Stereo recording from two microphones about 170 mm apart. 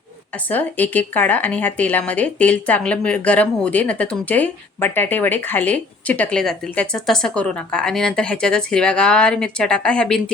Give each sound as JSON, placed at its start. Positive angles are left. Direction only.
{"t": 0.3, "sound": "speech", "side_deg": 10}